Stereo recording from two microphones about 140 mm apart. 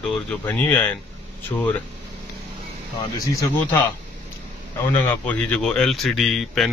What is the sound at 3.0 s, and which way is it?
Speech, 20° left (ahead or behind).